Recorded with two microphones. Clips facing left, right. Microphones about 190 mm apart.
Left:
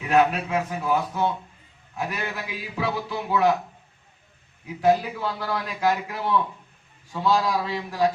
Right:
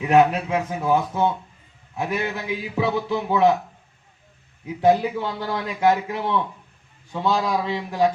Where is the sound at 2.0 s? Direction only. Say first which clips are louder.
Right 4 dB; 25° right (ahead or behind).